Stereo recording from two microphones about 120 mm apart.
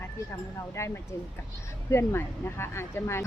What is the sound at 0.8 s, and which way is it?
Speech, 25° left (ahead or behind).